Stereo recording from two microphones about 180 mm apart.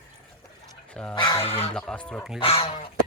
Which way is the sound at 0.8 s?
5° left (ahead or behind).